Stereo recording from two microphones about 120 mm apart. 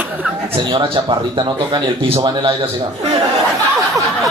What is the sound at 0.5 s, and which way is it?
A man's voice, 45° right (ahead or behind).